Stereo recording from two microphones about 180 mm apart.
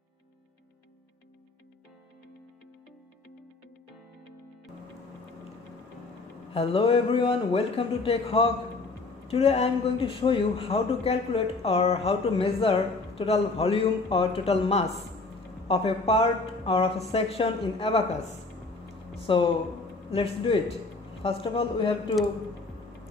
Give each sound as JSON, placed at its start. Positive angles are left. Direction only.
{"t": 6.5, "sound": "a man's voice", "side_deg": 35}
{"t": 19.2, "sound": "a man's voice", "side_deg": 30}